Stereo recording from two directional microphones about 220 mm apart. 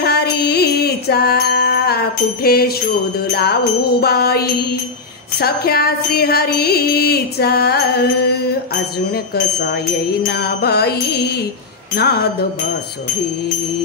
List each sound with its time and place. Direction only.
0.0 s music: 45° left (ahead or behind)
4.0 s music: 45° left (ahead or behind)